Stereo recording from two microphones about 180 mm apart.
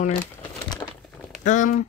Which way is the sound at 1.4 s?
45° left (ahead or behind).